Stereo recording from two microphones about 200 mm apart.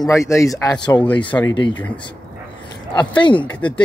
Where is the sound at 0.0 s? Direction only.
15° left (ahead or behind).